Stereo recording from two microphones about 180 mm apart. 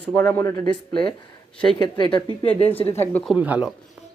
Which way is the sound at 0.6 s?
25° left (ahead or behind).